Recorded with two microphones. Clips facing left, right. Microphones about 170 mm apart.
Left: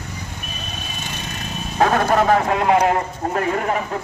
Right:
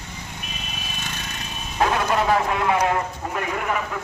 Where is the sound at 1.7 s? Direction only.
45° left (ahead or behind).